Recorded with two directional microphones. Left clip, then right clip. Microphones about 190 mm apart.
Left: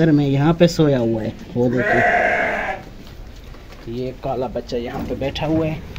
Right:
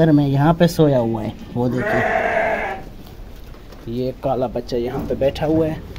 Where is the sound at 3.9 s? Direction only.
25° right (ahead or behind).